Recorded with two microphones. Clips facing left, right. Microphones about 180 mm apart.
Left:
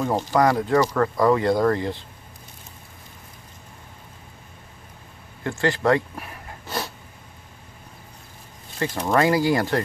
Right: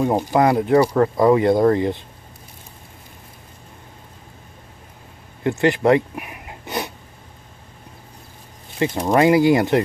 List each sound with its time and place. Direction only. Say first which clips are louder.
0.0 s speech: right 3 dB; 15° right (ahead or behind)
5.4 s a sound: right 5 dB; 20° right (ahead or behind)
8.7 s speech: right 4 dB; 20° right (ahead or behind)